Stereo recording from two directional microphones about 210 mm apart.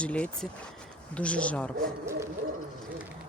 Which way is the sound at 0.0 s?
5° left (ahead or behind).